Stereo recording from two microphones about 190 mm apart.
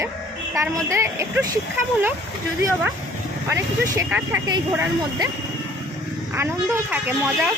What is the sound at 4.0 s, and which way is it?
Speech, 10° right (ahead or behind).